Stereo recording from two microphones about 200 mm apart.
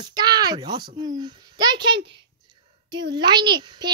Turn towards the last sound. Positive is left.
turn(degrees=-20)  # may be behind; listen again after turning